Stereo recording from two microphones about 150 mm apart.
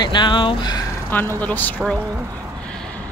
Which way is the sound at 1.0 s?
15° left (ahead or behind).